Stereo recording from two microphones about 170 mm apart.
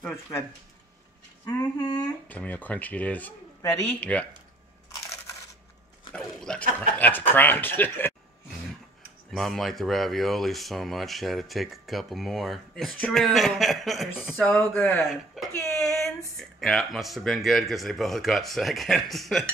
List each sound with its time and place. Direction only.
1.4 s speech: 20° left (ahead or behind)
2.2 s speech: 10° left (ahead or behind)
6.1 s a sound: 5° left (ahead or behind)
7.0 s speech: 10° left (ahead or behind)
9.3 s speech: centre (ahead or behind)
14.3 s speech: 10° left (ahead or behind)
15.3 s speech: centre (ahead or behind)